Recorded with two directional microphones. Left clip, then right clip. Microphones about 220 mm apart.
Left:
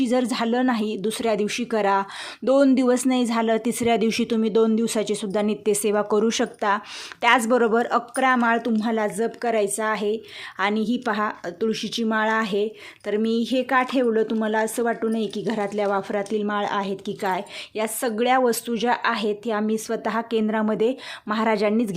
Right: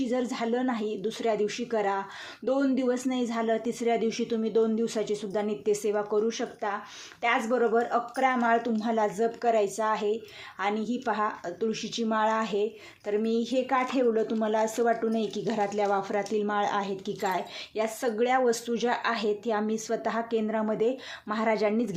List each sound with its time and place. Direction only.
0.0 s speech: 40° left (ahead or behind)